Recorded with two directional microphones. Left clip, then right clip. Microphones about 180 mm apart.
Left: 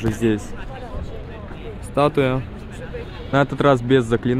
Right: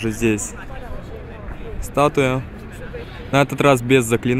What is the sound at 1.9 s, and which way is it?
Speech, 15° right (ahead or behind).